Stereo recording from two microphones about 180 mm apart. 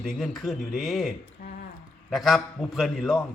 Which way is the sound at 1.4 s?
60° left (ahead or behind).